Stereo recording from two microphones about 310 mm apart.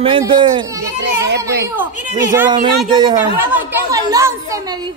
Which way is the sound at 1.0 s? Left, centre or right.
Right.